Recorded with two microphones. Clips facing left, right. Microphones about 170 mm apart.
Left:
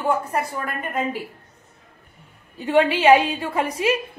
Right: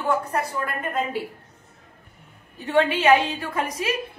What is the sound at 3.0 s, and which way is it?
Speech, 25° left (ahead or behind).